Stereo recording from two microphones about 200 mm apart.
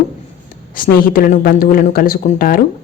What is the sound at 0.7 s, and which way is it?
A woman's voice, 45° left (ahead or behind).